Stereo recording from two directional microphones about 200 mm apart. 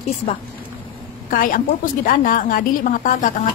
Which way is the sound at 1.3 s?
45° left (ahead or behind).